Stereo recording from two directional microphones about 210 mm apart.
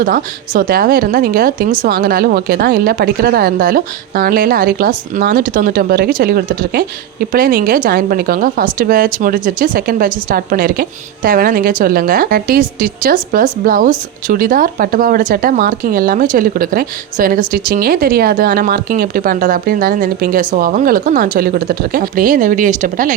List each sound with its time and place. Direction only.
0.0 s speech: 40° right (ahead or behind)